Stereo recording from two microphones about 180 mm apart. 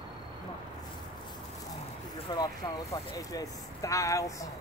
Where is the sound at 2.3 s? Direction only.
20° left (ahead or behind).